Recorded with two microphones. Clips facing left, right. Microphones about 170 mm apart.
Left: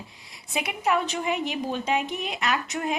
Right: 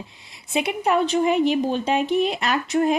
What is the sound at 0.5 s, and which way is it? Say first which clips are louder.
Speech: right 5 dB; 30° right (ahead or behind).